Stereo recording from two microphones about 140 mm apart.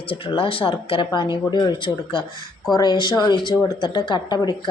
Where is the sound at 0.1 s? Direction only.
40° left (ahead or behind).